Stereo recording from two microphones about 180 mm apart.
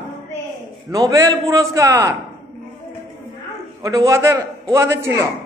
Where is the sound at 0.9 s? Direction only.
20° right (ahead or behind).